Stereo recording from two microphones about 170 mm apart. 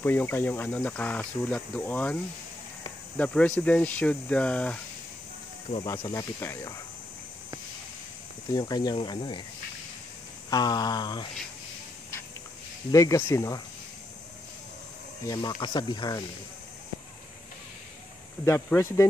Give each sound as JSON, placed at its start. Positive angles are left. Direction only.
{"t": 0.0, "sound": "speech", "side_deg": 10}
{"t": 3.2, "sound": "speech", "side_deg": 5}
{"t": 5.9, "sound": "speech", "side_deg": 20}
{"t": 8.5, "sound": "speech", "side_deg": 25}
{"t": 10.5, "sound": "speech", "side_deg": 25}
{"t": 12.9, "sound": "speech", "side_deg": 20}
{"t": 15.2, "sound": "speech", "side_deg": 25}
{"t": 18.4, "sound": "speech", "side_deg": 15}